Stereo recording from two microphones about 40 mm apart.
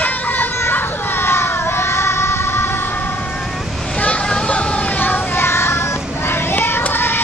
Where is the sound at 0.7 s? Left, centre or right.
Left.